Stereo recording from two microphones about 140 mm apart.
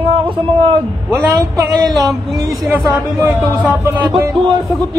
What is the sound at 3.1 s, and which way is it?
Speech, 15° right (ahead or behind).